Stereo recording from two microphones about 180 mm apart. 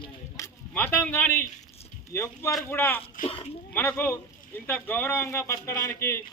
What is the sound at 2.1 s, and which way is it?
Speech, 15° left (ahead or behind).